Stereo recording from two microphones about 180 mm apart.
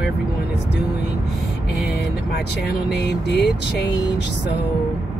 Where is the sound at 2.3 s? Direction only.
65° left (ahead or behind).